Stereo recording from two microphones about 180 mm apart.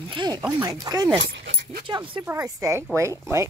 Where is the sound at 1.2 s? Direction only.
55° right (ahead or behind).